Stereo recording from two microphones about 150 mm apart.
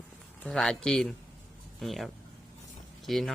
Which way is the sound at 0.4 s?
5° left (ahead or behind).